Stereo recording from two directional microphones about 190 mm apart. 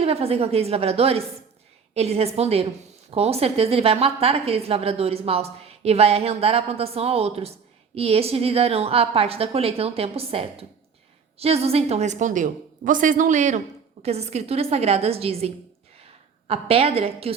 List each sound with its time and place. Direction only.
0.0 s a woman's voice: 30° right (ahead or behind)